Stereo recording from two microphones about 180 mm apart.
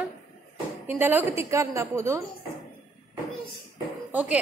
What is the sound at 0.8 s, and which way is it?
A woman's voice, 10° right (ahead or behind).